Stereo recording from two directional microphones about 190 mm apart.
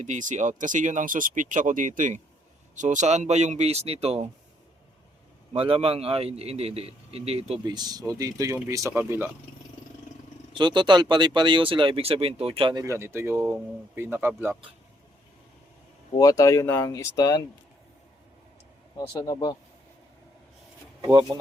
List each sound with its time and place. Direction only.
0.0 s a man's voice: 40° right (ahead or behind)
5.5 s a man's voice: 30° right (ahead or behind); by 9.3 s 10° right (ahead or behind)
10.5 s speech: 25° right (ahead or behind)
12.8 s speech: 15° right (ahead or behind)
16.1 s speech: 20° left (ahead or behind)
18.9 s speech: 20° left (ahead or behind)
21.0 s speech: 20° right (ahead or behind)